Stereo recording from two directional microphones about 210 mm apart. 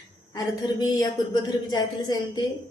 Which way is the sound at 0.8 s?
20° left (ahead or behind).